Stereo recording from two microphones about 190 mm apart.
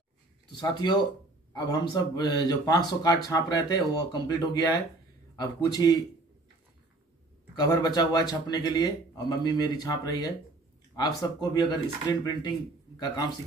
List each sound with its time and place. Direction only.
0.5 s speech: 20° left (ahead or behind)
7.5 s speech: 20° left (ahead or behind)